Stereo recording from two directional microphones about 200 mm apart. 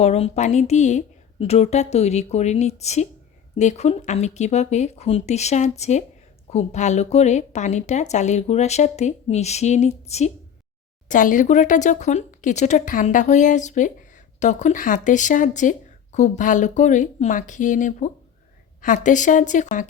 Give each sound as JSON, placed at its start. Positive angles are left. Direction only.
{"t": 0.0, "sound": "a woman's voice", "side_deg": 35}